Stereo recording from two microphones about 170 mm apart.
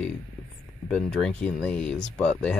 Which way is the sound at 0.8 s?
5° left (ahead or behind).